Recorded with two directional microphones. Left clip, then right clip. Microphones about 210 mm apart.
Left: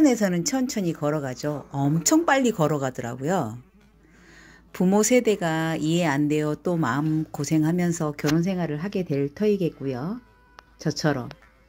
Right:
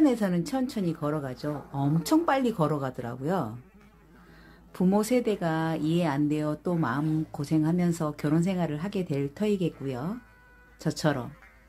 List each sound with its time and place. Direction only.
0.0 s speech: 15° left (ahead or behind)
4.7 s speech: 10° left (ahead or behind)